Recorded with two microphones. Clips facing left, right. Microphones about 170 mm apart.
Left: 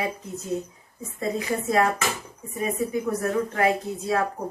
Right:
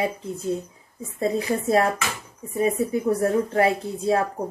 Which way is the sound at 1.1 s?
30° right (ahead or behind).